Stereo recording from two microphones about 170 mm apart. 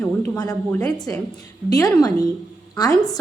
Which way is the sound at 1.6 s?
20° left (ahead or behind).